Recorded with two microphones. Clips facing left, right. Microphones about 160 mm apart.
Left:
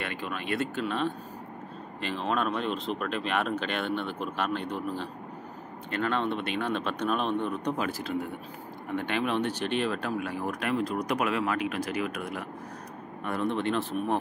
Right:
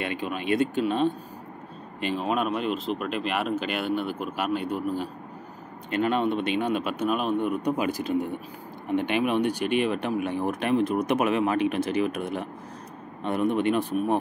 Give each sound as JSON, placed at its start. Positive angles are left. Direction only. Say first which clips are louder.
{"t": 0.0, "sound": "speech", "louder": "right 5 dB", "side_deg": -20}